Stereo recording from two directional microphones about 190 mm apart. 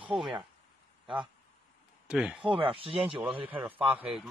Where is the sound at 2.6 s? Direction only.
30° right (ahead or behind).